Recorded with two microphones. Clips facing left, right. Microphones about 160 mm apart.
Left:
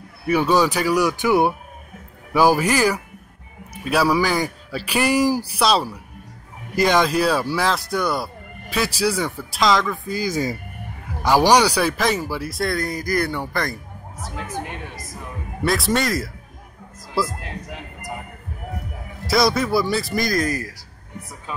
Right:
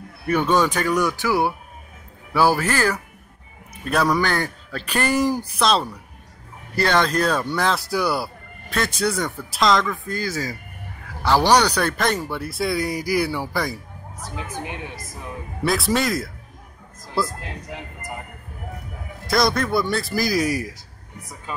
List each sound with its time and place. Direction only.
0.3 s speech: 10° left (ahead or behind)
1.2 s speech: 20° left (ahead or behind); by 13.7 s 5° right (ahead or behind)
15.6 s speech: centre (ahead or behind)
19.2 s speech: 5° left (ahead or behind); by 20.7 s 15° right (ahead or behind)